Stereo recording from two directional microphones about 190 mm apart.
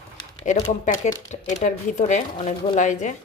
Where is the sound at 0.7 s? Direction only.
40° left (ahead or behind).